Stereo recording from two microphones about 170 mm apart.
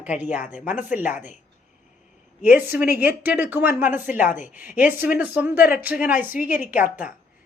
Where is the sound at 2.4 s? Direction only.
10° right (ahead or behind).